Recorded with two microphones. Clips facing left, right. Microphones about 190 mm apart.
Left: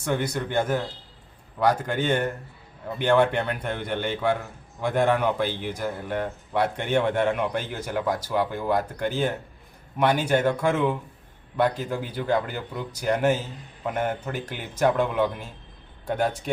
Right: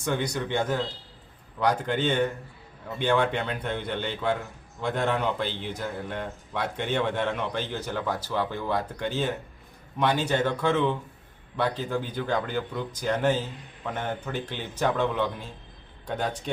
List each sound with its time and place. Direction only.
0.1 s speech: 5° left (ahead or behind)
1.9 s speech: 10° left (ahead or behind)